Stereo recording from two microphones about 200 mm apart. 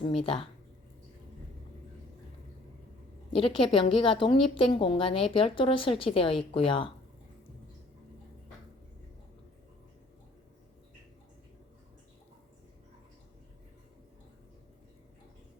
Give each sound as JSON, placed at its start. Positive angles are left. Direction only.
{"t": 0.0, "sound": "speech", "side_deg": 30}
{"t": 3.3, "sound": "speech", "side_deg": 25}